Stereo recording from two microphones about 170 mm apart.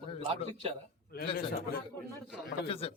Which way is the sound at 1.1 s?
65° left (ahead or behind).